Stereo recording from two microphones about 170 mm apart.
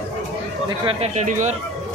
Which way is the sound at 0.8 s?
40° right (ahead or behind).